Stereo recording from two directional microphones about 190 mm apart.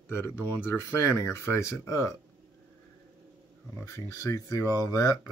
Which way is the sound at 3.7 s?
15° left (ahead or behind).